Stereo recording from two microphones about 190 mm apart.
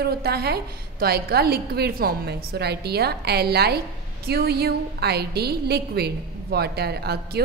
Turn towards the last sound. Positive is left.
turn(degrees=-55)  # may be behind; listen again after turning